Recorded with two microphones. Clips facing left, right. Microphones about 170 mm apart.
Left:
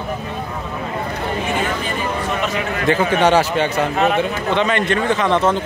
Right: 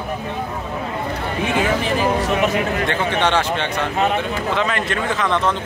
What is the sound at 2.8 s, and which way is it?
Speech, 5° left (ahead or behind).